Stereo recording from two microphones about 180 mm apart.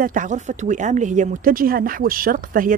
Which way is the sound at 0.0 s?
45° right (ahead or behind).